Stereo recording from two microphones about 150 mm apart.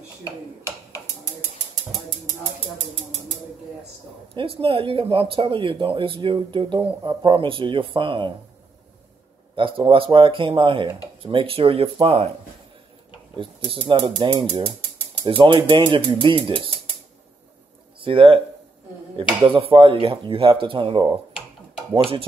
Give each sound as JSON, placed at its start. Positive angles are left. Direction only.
{"t": 4.3, "sound": "speech", "side_deg": -35}
{"t": 9.6, "sound": "speech", "side_deg": -35}
{"t": 13.4, "sound": "speech", "side_deg": -35}
{"t": 18.0, "sound": "speech", "side_deg": -35}
{"t": 19.4, "sound": "speech", "side_deg": -35}